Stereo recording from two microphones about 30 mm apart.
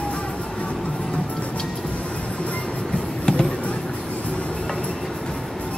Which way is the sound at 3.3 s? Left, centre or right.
Left.